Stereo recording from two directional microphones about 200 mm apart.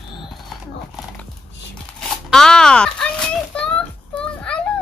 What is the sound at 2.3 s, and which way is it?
Speech, 5° left (ahead or behind).